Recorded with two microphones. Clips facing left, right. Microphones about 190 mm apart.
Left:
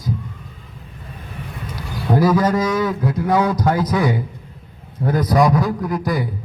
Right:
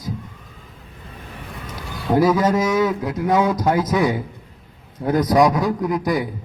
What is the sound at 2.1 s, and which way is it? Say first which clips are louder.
A man's voice: even; 20° right (ahead or behind).